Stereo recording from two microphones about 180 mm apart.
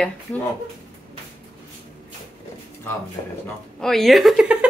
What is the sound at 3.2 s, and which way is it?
Speech, 35° left (ahead or behind).